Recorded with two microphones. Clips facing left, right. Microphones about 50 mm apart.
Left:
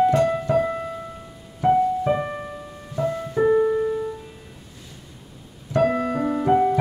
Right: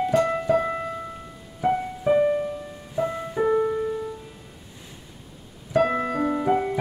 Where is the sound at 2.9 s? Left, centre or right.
Centre.